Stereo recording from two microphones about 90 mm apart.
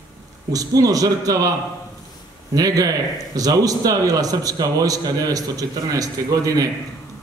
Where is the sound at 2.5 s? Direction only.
40° right (ahead or behind).